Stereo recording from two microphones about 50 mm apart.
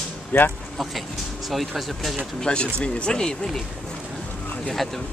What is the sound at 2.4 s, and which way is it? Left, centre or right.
Speech, centre.